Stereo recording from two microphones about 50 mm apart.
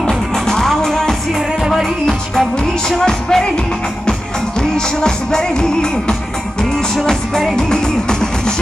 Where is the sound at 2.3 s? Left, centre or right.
Centre.